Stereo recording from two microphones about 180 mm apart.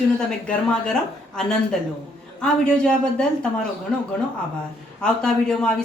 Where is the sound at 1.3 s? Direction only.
5° left (ahead or behind).